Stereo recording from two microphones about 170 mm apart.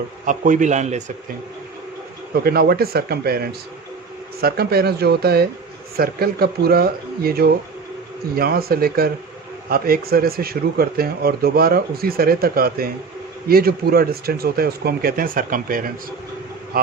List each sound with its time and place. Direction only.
0.3 s a man's voice: 50° right (ahead or behind)
2.3 s speech: 65° right (ahead or behind)